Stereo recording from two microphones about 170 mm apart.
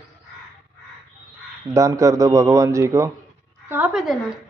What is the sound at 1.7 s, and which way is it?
Speech, 20° right (ahead or behind).